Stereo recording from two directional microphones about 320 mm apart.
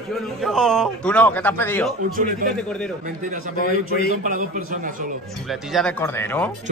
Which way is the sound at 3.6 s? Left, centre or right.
Left.